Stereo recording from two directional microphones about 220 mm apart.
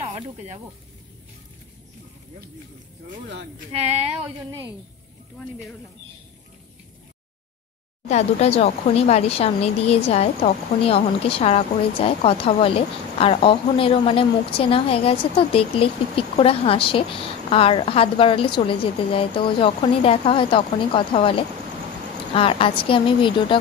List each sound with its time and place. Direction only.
3.7 s a woman's voice: 30° right (ahead or behind)
8.1 s speech: 30° left (ahead or behind)